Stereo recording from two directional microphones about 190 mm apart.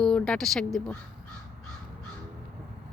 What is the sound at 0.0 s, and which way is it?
Speech, 5° left (ahead or behind).